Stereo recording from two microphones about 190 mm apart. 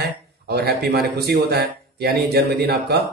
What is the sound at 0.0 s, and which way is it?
Speech, 55° right (ahead or behind).